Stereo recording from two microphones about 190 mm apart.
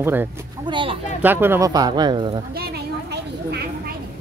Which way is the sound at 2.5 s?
55° right (ahead or behind).